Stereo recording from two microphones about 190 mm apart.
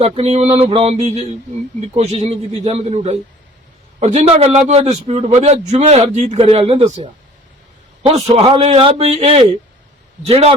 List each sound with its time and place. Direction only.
0.0 s a man's voice: 35° right (ahead or behind)